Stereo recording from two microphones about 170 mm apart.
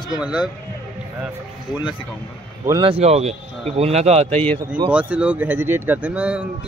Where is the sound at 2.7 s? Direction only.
30° right (ahead or behind).